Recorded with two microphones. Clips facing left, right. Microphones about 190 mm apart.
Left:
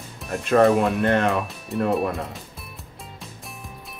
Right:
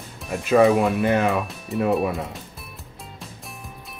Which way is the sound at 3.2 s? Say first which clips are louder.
Right 1 dB; centre (ahead or behind).